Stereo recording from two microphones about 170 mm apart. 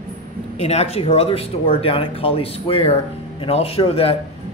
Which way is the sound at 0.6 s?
35° left (ahead or behind).